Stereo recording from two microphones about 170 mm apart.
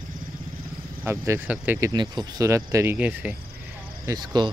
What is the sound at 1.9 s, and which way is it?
Speech, 25° right (ahead or behind).